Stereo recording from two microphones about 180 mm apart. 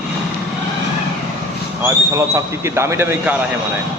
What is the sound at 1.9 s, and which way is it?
A man's voice, 15° right (ahead or behind).